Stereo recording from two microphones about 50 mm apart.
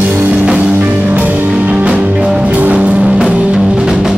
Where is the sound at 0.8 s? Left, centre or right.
Right.